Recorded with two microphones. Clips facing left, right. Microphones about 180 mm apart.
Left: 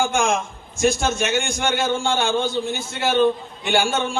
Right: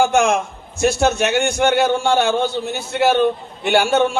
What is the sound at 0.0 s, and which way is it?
A man's voice, 65° right (ahead or behind).